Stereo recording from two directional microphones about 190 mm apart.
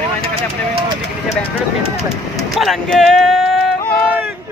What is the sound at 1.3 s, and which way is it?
Speech, 35° left (ahead or behind).